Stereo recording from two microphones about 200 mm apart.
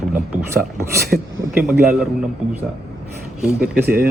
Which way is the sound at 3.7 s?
50° right (ahead or behind).